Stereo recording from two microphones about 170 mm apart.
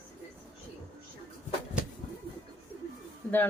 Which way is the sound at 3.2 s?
10° left (ahead or behind).